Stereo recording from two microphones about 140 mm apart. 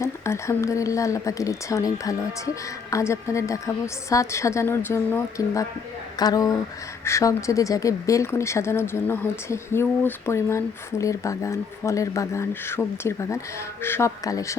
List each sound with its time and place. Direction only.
0.0 s speech: 20° left (ahead or behind)
6.1 s speech: 25° left (ahead or behind)